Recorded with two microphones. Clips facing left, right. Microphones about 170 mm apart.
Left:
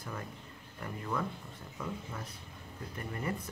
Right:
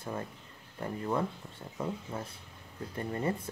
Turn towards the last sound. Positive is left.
turn(degrees=-30)  # may be behind; listen again after turning